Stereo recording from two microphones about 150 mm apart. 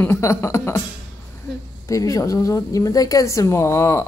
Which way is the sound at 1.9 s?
20° left (ahead or behind).